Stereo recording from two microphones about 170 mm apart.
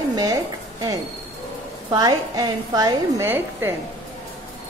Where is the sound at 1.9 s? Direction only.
25° right (ahead or behind).